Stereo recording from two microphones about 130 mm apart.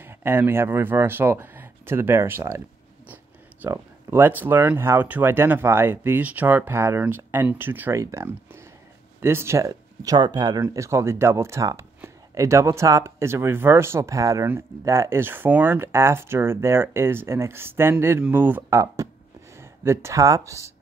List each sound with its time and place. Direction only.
0.0 s speech: 15° right (ahead or behind)
3.6 s speech: 15° right (ahead or behind)